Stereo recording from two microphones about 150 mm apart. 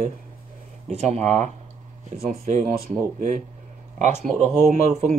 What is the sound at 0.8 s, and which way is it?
Speech, 50° right (ahead or behind).